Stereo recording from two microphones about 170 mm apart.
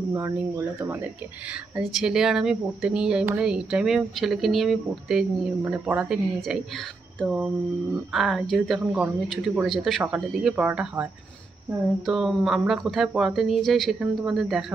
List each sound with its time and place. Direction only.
0.1 s speech: 15° right (ahead or behind)
1.5 s speech: 5° right (ahead or behind)
12.1 s speech: centre (ahead or behind)